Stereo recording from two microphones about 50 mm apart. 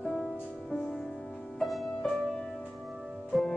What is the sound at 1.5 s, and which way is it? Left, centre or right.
Music, centre.